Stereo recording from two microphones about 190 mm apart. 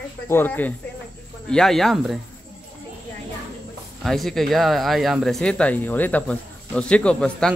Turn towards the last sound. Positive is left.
turn(degrees=5)  # may be behind; listen again after turning